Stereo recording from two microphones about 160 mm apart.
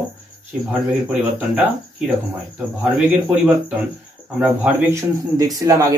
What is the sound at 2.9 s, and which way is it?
A man's voice, 5° right (ahead or behind).